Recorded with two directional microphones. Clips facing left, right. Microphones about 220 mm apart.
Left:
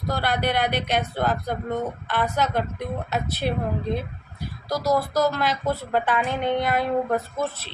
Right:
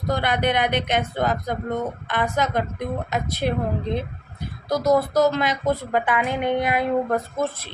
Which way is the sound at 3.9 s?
20° right (ahead or behind).